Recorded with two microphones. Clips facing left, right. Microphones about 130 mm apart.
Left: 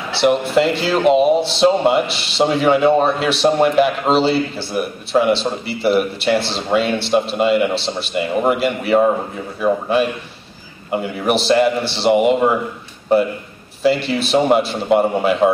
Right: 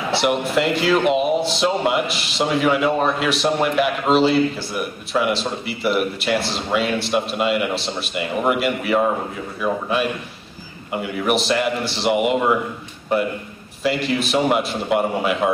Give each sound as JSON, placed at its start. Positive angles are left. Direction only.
{"t": 0.1, "sound": "speech", "side_deg": 30}
{"t": 13.8, "sound": "speech", "side_deg": 30}